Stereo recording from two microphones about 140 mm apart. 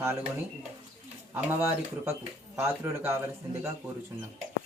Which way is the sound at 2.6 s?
20° right (ahead or behind).